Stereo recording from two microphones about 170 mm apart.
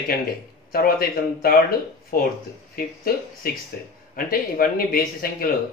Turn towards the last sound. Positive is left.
turn(degrees=60)  # may be behind; listen again after turning